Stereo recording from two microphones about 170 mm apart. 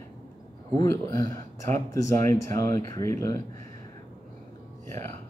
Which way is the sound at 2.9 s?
15° left (ahead or behind).